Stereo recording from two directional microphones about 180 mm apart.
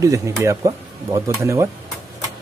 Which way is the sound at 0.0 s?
20° right (ahead or behind).